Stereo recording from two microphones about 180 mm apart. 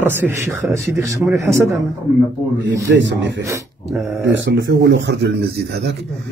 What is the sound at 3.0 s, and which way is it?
Speech, 85° right.